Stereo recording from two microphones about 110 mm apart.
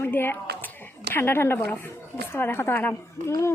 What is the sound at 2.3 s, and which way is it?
A woman's voice, 20° left (ahead or behind).